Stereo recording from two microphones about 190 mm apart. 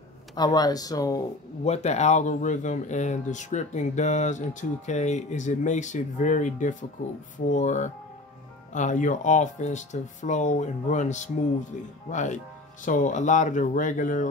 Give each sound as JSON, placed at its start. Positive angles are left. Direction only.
{"t": 0.4, "sound": "speech", "side_deg": 20}
{"t": 1.6, "sound": "speech", "side_deg": 35}